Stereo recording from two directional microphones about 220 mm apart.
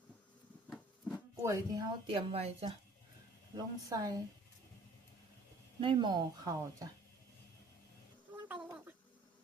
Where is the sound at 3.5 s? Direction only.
15° right (ahead or behind).